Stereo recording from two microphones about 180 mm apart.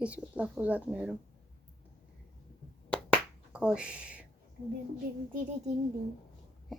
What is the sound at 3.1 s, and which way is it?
Finger snapping, 5° right (ahead or behind).